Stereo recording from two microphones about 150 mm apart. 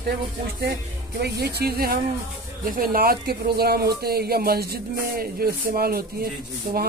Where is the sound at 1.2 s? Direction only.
90° right.